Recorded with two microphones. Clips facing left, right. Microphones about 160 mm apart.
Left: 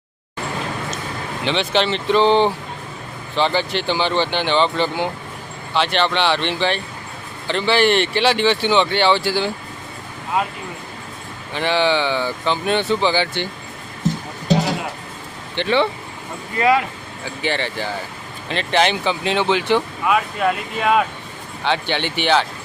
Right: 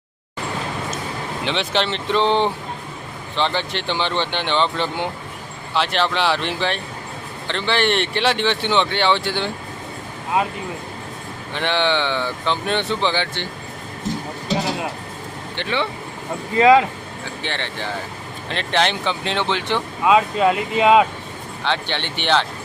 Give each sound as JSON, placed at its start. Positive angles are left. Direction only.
{"t": 1.5, "sound": "speech", "side_deg": 0}
{"t": 11.5, "sound": "speech", "side_deg": 5}
{"t": 15.5, "sound": "speech", "side_deg": 35}
{"t": 16.6, "sound": "speech", "side_deg": -20}
{"t": 17.4, "sound": "speech", "side_deg": 5}
{"t": 20.1, "sound": "speech", "side_deg": -20}
{"t": 21.6, "sound": "speech", "side_deg": 10}